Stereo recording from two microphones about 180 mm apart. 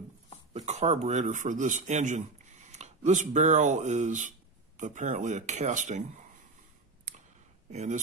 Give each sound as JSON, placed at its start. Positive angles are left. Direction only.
{"t": 0.5, "sound": "speech", "side_deg": -40}
{"t": 7.7, "sound": "speech", "side_deg": -40}